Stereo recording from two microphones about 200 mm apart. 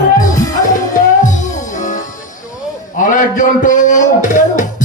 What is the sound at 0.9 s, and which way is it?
Music, 40° left (ahead or behind).